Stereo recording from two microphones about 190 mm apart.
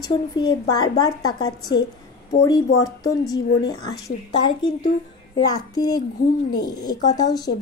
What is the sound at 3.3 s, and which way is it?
Speech, 20° left (ahead or behind).